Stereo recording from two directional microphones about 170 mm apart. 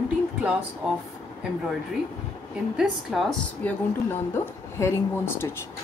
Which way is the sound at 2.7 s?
Centre (ahead or behind).